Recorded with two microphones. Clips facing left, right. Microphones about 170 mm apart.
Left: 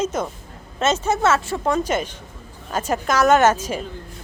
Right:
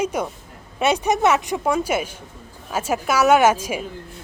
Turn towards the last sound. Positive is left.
turn(degrees=-10)  # may be behind; listen again after turning